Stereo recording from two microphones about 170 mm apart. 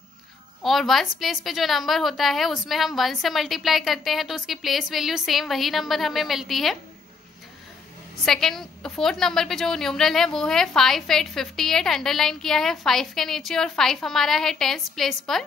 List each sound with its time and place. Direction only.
0.6 s a woman's voice: centre (ahead or behind)
8.3 s a woman's voice: centre (ahead or behind)